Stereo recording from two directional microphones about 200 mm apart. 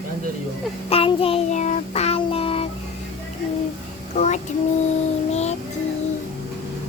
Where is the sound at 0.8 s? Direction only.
30° left (ahead or behind).